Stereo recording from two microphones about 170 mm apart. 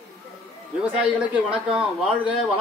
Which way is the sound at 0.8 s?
5° right (ahead or behind).